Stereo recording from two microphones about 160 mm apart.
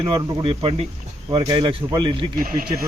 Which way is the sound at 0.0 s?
35° right (ahead or behind).